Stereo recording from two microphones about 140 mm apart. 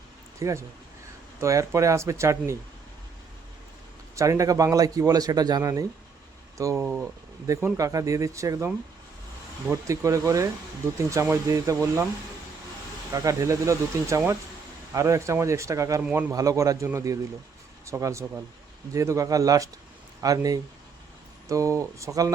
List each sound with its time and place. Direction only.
0.3 s a man's voice: 20° right (ahead or behind)
4.1 s a man's voice: 20° right (ahead or behind)
13.1 s a man's voice: 25° right (ahead or behind)
16.0 s speech: 10° right (ahead or behind)
16.3 s a man's voice: 25° right (ahead or behind)